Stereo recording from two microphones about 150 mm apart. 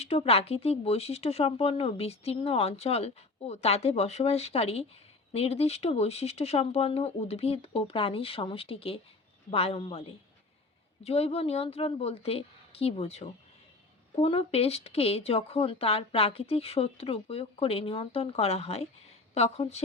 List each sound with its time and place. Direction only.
0.0 s speech: 40° left (ahead or behind)
11.0 s speech: 45° left (ahead or behind)